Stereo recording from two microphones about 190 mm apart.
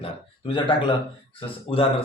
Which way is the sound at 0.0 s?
25° left (ahead or behind).